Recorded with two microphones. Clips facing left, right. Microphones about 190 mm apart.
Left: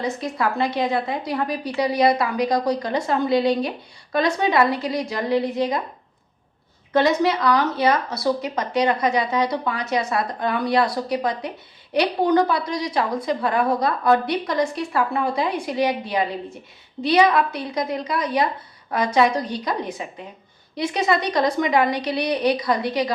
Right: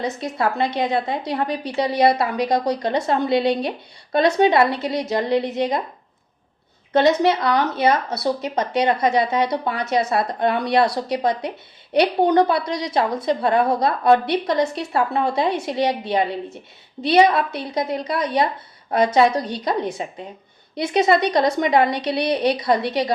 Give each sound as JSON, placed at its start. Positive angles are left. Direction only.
{"t": 0.0, "sound": "a woman's voice", "side_deg": -25}
{"t": 6.9, "sound": "a woman's voice", "side_deg": -25}